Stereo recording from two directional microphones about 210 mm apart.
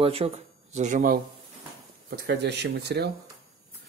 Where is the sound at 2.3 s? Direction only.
55° right (ahead or behind).